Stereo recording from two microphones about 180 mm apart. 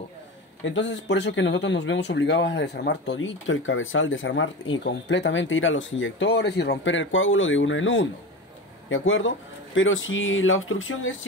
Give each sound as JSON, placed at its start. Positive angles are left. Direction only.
{"t": 0.7, "sound": "speech", "side_deg": 85}